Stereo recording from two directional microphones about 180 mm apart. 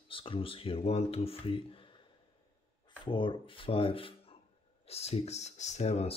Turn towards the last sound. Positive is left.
turn(degrees=35)  # may be behind; listen again after turning